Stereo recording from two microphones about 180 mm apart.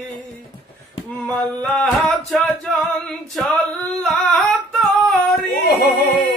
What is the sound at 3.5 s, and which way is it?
Singing, 10° left (ahead or behind).